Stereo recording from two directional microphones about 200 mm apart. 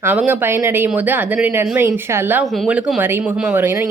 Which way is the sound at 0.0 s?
10° right (ahead or behind).